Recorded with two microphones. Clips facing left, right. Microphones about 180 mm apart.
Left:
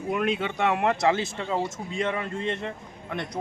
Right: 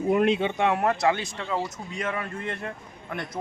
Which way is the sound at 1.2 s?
25° left (ahead or behind).